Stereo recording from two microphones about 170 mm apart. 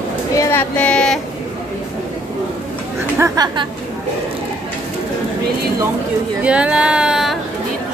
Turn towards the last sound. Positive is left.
turn(degrees=-5)  # may be behind; listen again after turning